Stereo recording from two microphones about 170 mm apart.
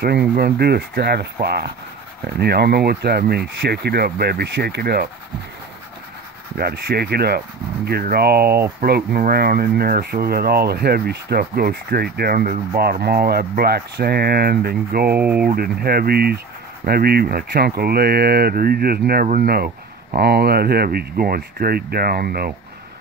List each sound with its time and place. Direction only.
0.0 s speech: 65° right (ahead or behind)
6.5 s speech: 65° right (ahead or behind)
15.1 s speech: 10° right (ahead or behind)
15.4 s speech: 65° right (ahead or behind)